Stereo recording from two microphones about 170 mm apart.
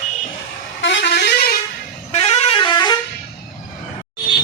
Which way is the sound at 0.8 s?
90° left.